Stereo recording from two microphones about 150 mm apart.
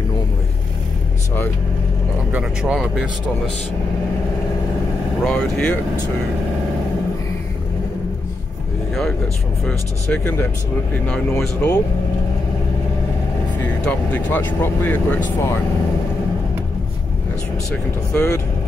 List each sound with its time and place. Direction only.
2.3 s speech: 5° right (ahead or behind)
5.2 s speech: 5° left (ahead or behind)
9.7 s speech: 10° left (ahead or behind)
13.8 s speech: 10° left (ahead or behind)
18.1 s speech: 15° left (ahead or behind)